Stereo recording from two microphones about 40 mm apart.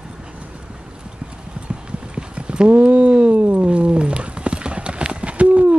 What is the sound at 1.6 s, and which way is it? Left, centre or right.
Clip-clop, right.